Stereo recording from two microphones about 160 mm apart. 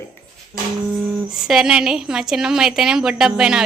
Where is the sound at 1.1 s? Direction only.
Centre (ahead or behind).